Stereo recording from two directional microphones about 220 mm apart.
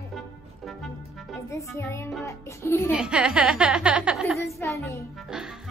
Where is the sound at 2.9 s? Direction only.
5° right (ahead or behind).